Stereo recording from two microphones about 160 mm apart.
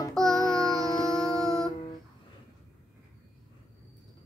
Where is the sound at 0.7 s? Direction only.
25° left (ahead or behind).